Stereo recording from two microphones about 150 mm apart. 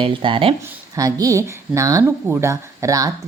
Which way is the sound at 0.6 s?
20° right (ahead or behind).